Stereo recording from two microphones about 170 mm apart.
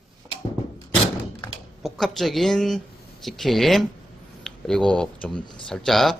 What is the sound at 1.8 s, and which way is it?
Speech, centre (ahead or behind).